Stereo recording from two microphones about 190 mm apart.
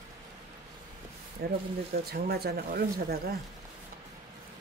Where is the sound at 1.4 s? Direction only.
60° right (ahead or behind).